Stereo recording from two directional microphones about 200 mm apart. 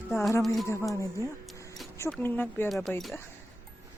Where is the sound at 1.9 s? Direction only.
10° left (ahead or behind).